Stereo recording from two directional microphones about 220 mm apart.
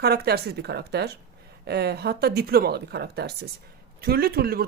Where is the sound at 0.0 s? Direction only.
45° right (ahead or behind).